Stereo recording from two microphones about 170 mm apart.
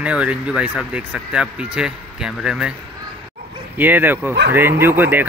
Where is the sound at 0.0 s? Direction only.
5° right (ahead or behind).